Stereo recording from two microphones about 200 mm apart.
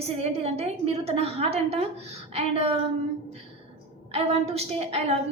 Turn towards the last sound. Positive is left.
turn(degrees=-30)  # may be behind; listen again after turning